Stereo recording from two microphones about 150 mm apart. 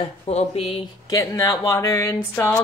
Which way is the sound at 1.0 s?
20° left (ahead or behind).